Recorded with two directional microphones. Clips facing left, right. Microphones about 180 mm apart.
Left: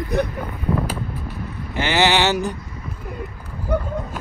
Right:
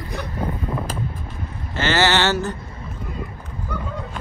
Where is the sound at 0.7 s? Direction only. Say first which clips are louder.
Left 2 dB; 10° left (ahead or behind).